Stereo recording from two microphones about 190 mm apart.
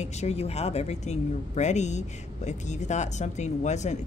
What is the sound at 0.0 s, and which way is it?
Speech, 35° left (ahead or behind).